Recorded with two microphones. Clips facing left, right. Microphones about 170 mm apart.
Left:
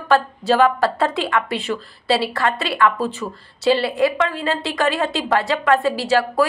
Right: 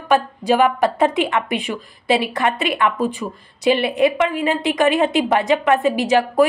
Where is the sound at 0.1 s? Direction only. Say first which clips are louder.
Even; 15° right (ahead or behind).